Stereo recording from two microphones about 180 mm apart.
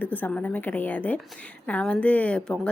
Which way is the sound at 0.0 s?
10° left (ahead or behind).